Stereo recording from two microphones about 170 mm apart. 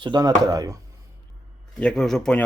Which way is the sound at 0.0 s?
25° right (ahead or behind).